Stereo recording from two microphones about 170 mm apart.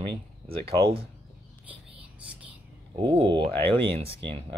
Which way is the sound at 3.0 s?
30° right (ahead or behind).